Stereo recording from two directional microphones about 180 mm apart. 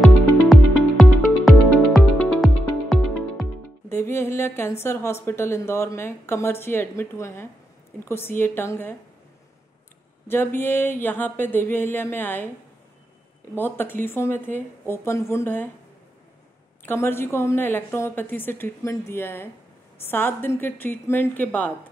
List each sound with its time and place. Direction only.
0.0 s music: centre (ahead or behind)
3.9 s a woman's voice: 15° left (ahead or behind)
10.2 s a woman's voice: 15° left (ahead or behind)
13.6 s a woman's voice: 10° left (ahead or behind)
16.8 s a woman's voice: 15° left (ahead or behind)